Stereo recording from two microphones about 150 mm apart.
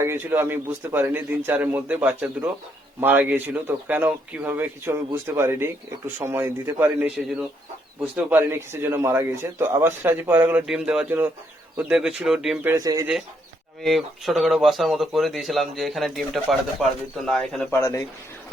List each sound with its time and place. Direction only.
0.0 s speech: 15° right (ahead or behind)
8.1 s speech: 15° right (ahead or behind)
12.6 s speech: 25° right (ahead or behind)
13.8 s speech: centre (ahead or behind)
17.7 s speech: 20° left (ahead or behind)